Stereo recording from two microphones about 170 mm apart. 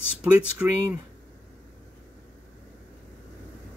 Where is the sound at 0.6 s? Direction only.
10° right (ahead or behind).